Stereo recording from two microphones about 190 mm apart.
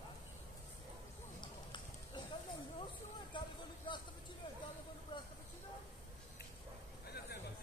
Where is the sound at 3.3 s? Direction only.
25° left (ahead or behind).